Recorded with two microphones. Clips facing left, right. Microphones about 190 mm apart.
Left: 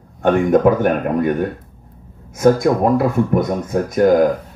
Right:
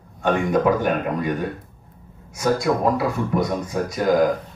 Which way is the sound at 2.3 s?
55° left (ahead or behind).